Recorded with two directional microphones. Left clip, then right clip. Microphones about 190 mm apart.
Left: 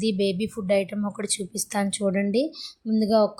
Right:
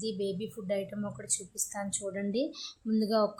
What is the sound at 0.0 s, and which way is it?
Speech, 30° left (ahead or behind).